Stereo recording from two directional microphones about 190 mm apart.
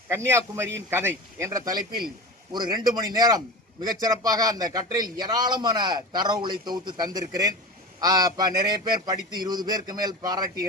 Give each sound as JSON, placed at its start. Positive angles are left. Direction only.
{"t": 0.1, "sound": "a man's voice", "side_deg": -15}